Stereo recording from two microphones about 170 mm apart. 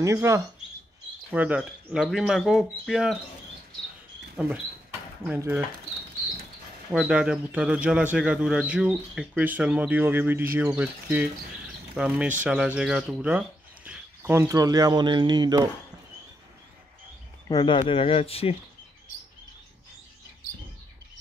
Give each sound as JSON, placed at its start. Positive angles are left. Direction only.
{"t": 0.0, "sound": "speech", "side_deg": -20}
{"t": 4.4, "sound": "speech", "side_deg": -5}
{"t": 6.9, "sound": "speech", "side_deg": -5}
{"t": 17.5, "sound": "speech", "side_deg": 25}